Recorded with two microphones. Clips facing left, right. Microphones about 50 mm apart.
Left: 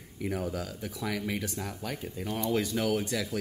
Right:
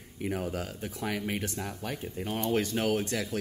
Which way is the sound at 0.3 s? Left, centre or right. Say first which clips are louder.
Even; right.